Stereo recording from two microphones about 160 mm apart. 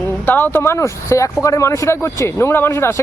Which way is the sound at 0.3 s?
10° left (ahead or behind).